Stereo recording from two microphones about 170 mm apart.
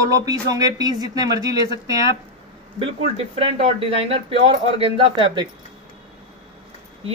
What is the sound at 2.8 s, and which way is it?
Speech, 35° right (ahead or behind).